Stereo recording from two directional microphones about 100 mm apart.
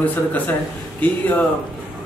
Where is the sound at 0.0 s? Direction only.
15° left (ahead or behind).